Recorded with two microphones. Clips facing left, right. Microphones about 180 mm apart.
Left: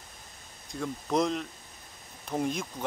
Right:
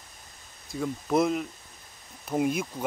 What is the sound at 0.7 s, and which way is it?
Speech, 5° right (ahead or behind).